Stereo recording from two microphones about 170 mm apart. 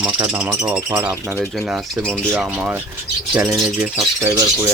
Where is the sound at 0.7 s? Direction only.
15° right (ahead or behind).